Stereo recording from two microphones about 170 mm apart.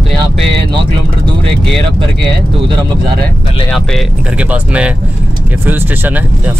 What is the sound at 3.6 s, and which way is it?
Speech, centre (ahead or behind).